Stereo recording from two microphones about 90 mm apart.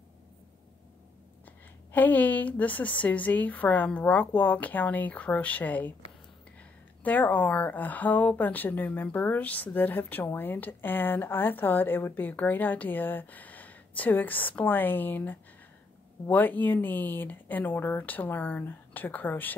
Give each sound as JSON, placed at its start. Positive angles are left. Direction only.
{"t": 1.9, "sound": "a woman's voice", "side_deg": 20}
{"t": 7.0, "sound": "speech", "side_deg": 20}